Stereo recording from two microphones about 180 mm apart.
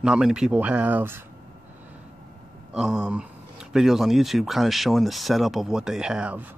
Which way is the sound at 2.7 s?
5° right (ahead or behind).